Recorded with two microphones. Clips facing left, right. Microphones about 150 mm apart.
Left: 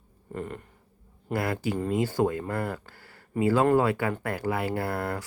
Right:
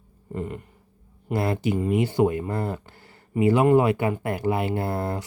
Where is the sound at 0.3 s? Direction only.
10° right (ahead or behind).